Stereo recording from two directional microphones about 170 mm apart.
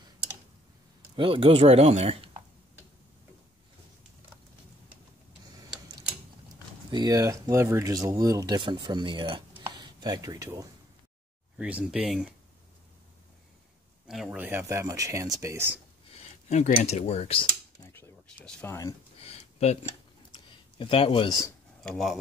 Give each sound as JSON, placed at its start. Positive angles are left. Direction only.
{"t": 1.1, "sound": "speech", "side_deg": -30}
{"t": 6.9, "sound": "speech", "side_deg": -25}
{"t": 11.5, "sound": "speech", "side_deg": -5}
{"t": 14.0, "sound": "speech", "side_deg": -5}
{"t": 16.4, "sound": "speech", "side_deg": 40}
{"t": 17.8, "sound": "a sound", "side_deg": 15}
{"t": 19.1, "sound": "a sound", "side_deg": 35}
{"t": 20.7, "sound": "speech", "side_deg": 30}
{"t": 21.8, "sound": "speech", "side_deg": 0}